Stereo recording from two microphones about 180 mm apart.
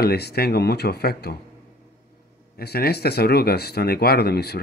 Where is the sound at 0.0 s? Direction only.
60° left (ahead or behind).